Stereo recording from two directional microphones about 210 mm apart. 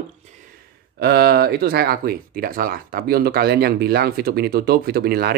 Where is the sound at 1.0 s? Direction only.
50° right (ahead or behind).